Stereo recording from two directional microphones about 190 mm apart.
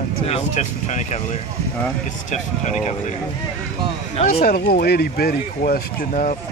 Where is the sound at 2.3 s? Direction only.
40° left (ahead or behind).